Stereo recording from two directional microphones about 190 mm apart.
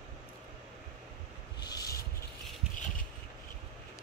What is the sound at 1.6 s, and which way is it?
Rub, 20° left (ahead or behind).